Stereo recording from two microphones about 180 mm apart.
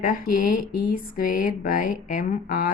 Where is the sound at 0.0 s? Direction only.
50° left (ahead or behind).